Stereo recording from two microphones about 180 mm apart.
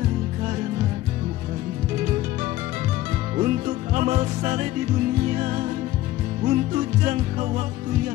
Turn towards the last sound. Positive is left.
turn(degrees=-45)  # may be behind; listen again after turning